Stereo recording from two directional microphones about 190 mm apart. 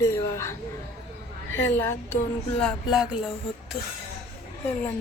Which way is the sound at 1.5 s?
10° left (ahead or behind).